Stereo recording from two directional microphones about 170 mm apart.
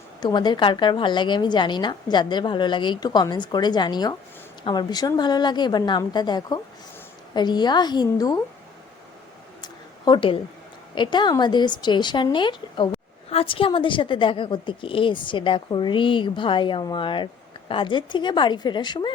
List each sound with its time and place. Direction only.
0.2 s a woman's voice: 25° left (ahead or behind)
10.1 s a woman's voice: 30° left (ahead or behind)